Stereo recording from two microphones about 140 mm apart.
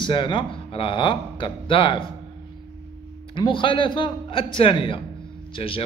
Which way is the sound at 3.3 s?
35° left (ahead or behind).